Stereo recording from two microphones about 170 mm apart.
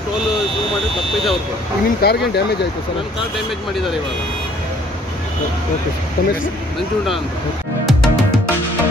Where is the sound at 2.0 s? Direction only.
70° left (ahead or behind).